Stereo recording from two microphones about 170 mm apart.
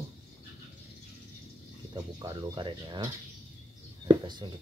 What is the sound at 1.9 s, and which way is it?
Speech, 25° right (ahead or behind).